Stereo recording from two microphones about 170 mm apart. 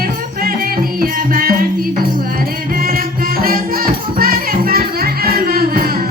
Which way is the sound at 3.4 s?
60° right (ahead or behind).